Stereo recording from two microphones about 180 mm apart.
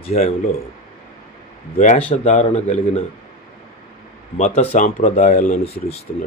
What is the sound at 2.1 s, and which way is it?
Speech, 40° left (ahead or behind).